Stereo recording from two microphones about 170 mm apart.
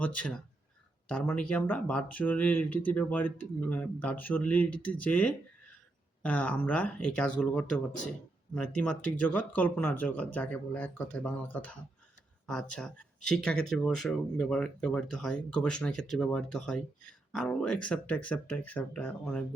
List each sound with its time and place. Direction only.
0.0 s speech: 5° left (ahead or behind)